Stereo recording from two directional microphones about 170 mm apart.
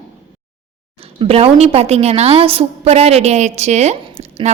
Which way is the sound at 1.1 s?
35° right (ahead or behind).